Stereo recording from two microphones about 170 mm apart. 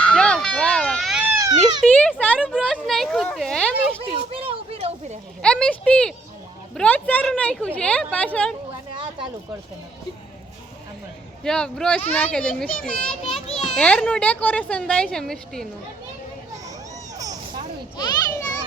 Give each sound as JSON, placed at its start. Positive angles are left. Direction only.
{"t": 0.0, "sound": "a sound", "side_deg": 5}
{"t": 1.2, "sound": "baby cry", "side_deg": -15}
{"t": 1.9, "sound": "a woman's voice", "side_deg": 10}
{"t": 4.1, "sound": "a child's voice", "side_deg": -35}
{"t": 5.4, "sound": "a woman's voice", "side_deg": 5}
{"t": 11.4, "sound": "a child's voice", "side_deg": 5}
{"t": 17.9, "sound": "a child's voice", "side_deg": 25}